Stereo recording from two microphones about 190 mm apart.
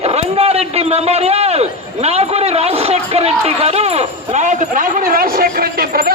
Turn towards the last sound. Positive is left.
turn(degrees=-50)  # may be behind; listen again after turning